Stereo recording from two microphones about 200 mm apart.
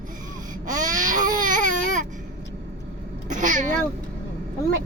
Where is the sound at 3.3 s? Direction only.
40° right (ahead or behind).